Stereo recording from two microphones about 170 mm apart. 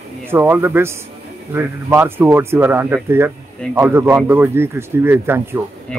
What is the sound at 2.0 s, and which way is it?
Speech, 10° right (ahead or behind).